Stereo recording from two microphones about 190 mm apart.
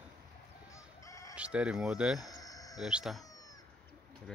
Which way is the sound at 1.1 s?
15° left (ahead or behind).